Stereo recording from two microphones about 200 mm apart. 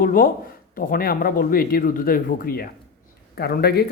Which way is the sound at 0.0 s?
45° left (ahead or behind).